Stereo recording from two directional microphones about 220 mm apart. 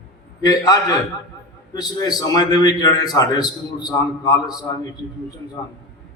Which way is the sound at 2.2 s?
15° left (ahead or behind).